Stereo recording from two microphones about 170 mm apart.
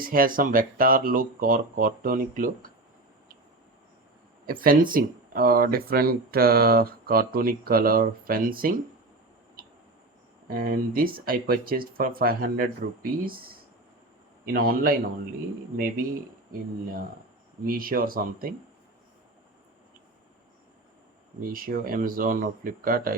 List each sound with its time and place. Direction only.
0.0 s speech: 55° right (ahead or behind)
4.6 s speech: 55° right (ahead or behind)
10.5 s speech: 60° right (ahead or behind)
17.7 s speech: 55° right (ahead or behind)
21.5 s speech: 55° right (ahead or behind)